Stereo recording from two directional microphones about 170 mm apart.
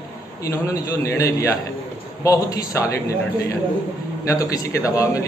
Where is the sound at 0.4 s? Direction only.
15° left (ahead or behind).